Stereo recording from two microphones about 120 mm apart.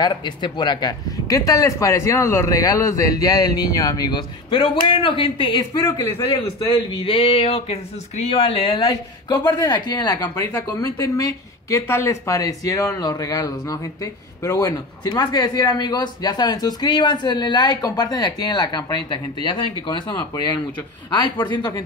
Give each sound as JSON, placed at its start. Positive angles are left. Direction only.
{"t": 0.0, "sound": "a man's voice", "side_deg": 40}